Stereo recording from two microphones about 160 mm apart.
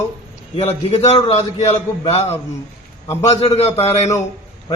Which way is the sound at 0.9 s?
35° left (ahead or behind).